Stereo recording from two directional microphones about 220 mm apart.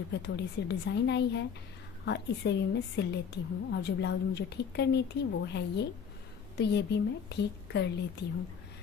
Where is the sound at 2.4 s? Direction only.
50° left (ahead or behind).